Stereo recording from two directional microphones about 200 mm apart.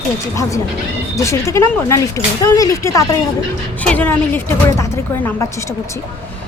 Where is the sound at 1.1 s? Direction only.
15° left (ahead or behind).